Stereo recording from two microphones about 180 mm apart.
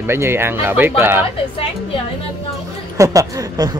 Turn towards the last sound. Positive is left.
turn(degrees=-20)  # may be behind; listen again after turning